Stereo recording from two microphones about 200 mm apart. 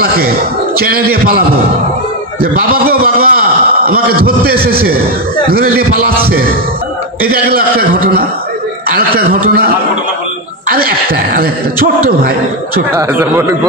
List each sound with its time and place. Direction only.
0.7 s speech: 50° right (ahead or behind)
2.4 s a sound: 50° right (ahead or behind)
4.6 s speech: 50° right (ahead or behind)
7.4 s speech: 45° right (ahead or behind)
11.3 s speech: 45° right (ahead or behind)
12.9 s speech: 10° right (ahead or behind)